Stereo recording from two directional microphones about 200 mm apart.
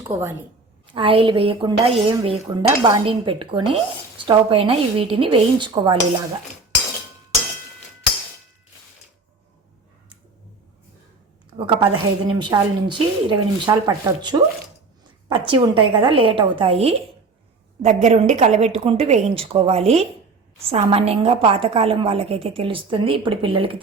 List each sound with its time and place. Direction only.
0.1 s speech: 10° right (ahead or behind)
0.9 s a woman's voice: 25° right (ahead or behind)
11.5 s a woman's voice: 25° right (ahead or behind)